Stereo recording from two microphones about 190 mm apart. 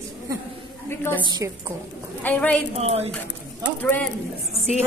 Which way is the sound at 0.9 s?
10° left (ahead or behind).